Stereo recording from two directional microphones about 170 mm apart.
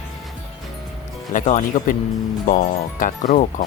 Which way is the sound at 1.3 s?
45° left (ahead or behind).